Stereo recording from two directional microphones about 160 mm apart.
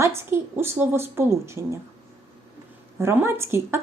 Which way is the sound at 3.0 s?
15° right (ahead or behind).